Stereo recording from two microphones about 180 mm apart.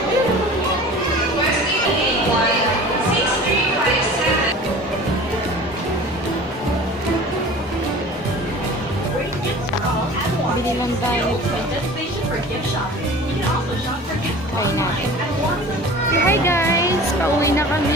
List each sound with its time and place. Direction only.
16.3 s music: 15° left (ahead or behind)